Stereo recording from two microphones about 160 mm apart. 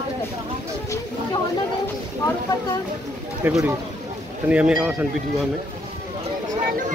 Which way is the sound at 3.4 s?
10° right (ahead or behind).